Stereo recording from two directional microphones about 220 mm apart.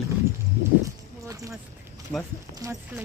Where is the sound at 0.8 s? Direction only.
15° right (ahead or behind).